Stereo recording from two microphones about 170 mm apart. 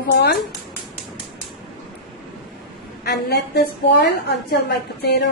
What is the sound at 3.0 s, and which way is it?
A woman's voice, 75° left (ahead or behind).